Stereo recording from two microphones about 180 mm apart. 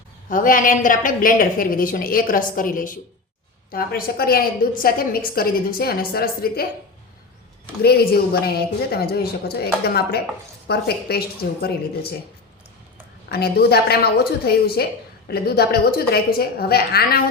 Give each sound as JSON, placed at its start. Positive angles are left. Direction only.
{"t": 0.3, "sound": "a woman's voice", "side_deg": 50}
{"t": 7.8, "sound": "a woman's voice", "side_deg": 60}
{"t": 13.2, "sound": "a woman's voice", "side_deg": 60}